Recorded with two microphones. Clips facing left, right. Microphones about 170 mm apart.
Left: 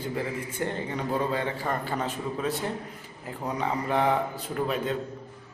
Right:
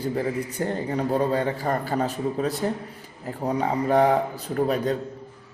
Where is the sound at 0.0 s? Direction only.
40° right (ahead or behind).